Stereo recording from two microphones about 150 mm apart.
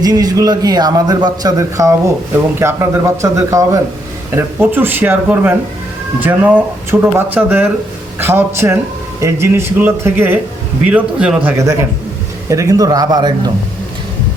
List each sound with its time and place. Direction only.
0.0 s a man's voice: 25° right (ahead or behind); by 11.5 s 10° right (ahead or behind)
12.5 s a man's voice: 20° right (ahead or behind)